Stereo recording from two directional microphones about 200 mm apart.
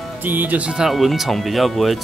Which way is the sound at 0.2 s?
10° right (ahead or behind).